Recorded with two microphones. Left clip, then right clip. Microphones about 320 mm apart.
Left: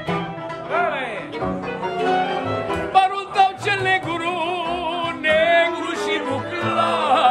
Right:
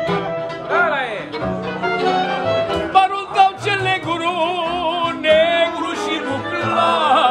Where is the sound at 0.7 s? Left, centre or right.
Right.